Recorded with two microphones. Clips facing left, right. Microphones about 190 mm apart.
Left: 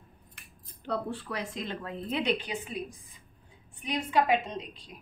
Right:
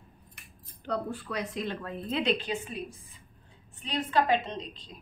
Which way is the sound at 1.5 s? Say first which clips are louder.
Right 2 dB; 20° left (ahead or behind).